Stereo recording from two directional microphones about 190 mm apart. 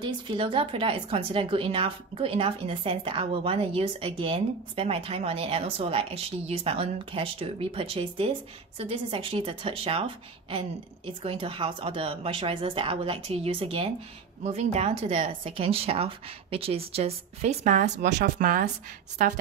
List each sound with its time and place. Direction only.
0.0 s speech: 25° right (ahead or behind)